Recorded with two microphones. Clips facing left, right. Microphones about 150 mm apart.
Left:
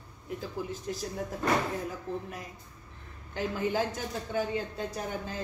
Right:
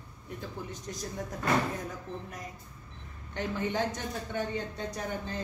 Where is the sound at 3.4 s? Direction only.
5° left (ahead or behind).